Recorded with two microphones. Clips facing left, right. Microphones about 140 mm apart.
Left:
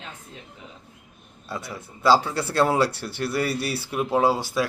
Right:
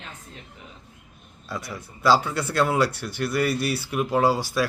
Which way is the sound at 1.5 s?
25° left (ahead or behind).